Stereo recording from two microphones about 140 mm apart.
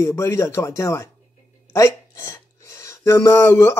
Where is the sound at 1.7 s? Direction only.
20° left (ahead or behind).